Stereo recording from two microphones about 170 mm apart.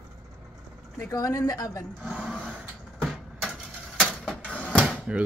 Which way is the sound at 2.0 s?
Centre (ahead or behind).